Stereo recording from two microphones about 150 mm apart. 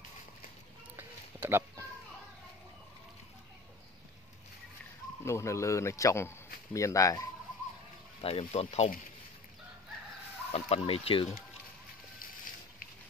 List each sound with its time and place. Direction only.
0.9 s a sound: 15° right (ahead or behind)
5.2 s speech: 20° left (ahead or behind)
8.2 s speech: 40° left (ahead or behind)
10.5 s speech: 40° left (ahead or behind)